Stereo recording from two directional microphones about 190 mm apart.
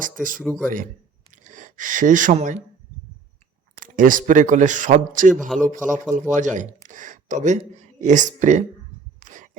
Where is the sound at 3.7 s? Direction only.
45° right (ahead or behind).